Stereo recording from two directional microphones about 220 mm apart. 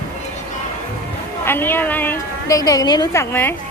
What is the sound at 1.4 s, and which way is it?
A woman's voice, 10° left (ahead or behind).